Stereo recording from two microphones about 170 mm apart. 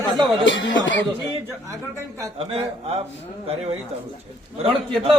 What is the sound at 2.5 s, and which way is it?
Speech, 35° right (ahead or behind).